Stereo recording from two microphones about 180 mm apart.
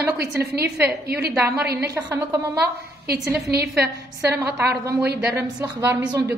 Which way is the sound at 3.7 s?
15° right (ahead or behind).